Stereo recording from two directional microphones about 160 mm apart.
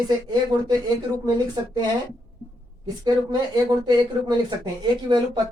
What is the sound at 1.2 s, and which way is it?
Speech, 25° right (ahead or behind).